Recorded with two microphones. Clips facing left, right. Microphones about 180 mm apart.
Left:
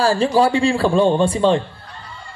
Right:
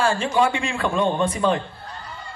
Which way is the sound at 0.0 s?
35° left (ahead or behind).